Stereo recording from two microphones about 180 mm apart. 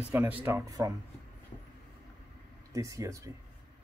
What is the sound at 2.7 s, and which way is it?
Speech, 15° right (ahead or behind).